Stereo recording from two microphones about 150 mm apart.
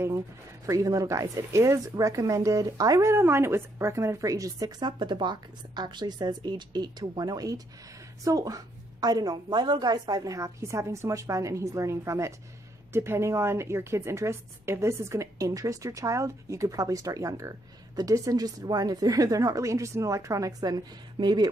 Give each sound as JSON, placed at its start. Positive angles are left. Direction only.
{"t": 0.7, "sound": "a woman's voice", "side_deg": -20}